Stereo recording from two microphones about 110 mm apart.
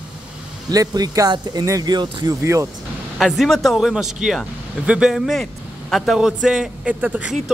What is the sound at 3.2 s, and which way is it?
Speech, centre (ahead or behind).